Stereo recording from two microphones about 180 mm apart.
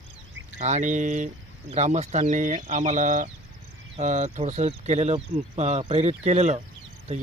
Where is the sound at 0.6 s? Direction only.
40° right (ahead or behind).